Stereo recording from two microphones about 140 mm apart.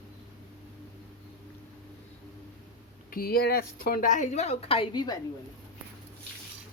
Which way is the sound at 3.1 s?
90° left.